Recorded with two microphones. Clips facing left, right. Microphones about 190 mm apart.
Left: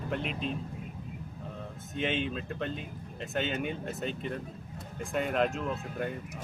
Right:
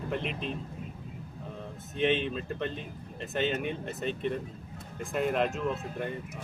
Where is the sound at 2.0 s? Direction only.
Centre (ahead or behind).